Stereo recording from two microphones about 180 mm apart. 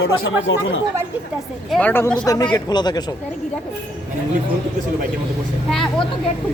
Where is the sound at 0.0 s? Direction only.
90° left.